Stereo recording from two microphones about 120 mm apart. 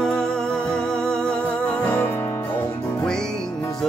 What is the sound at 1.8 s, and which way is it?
Music, 15° left (ahead or behind).